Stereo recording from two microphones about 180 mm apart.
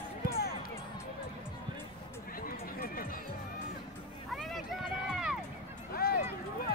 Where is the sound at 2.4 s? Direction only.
55° left (ahead or behind).